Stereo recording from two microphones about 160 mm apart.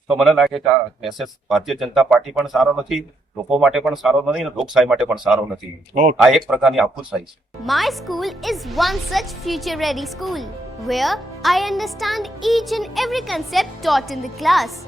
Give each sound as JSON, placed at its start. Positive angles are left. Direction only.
{"t": 0.1, "sound": "speech", "side_deg": 0}
{"t": 5.9, "sound": "speech", "side_deg": -50}
{"t": 6.2, "sound": "speech", "side_deg": 0}